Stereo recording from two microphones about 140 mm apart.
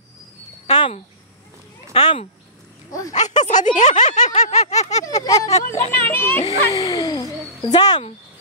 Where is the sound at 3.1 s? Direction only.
55° left (ahead or behind).